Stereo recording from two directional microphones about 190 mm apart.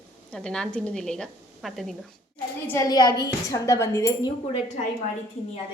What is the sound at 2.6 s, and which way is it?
A woman's voice, 15° left (ahead or behind).